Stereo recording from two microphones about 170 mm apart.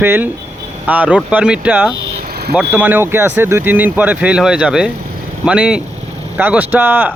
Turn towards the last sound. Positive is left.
turn(degrees=-10)  # may be behind; listen again after turning